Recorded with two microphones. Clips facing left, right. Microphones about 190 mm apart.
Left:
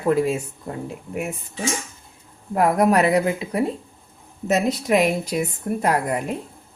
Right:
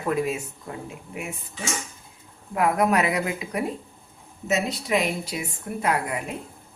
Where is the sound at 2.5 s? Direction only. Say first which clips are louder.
Left 4 dB; 35° left (ahead or behind).